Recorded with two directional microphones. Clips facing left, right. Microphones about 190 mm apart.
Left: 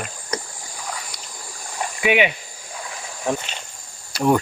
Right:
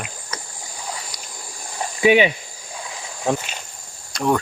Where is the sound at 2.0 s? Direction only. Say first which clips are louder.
Right 4 dB; 30° right (ahead or behind).